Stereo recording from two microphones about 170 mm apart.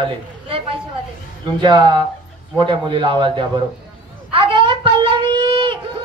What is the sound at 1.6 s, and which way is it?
Speech, 25° right (ahead or behind).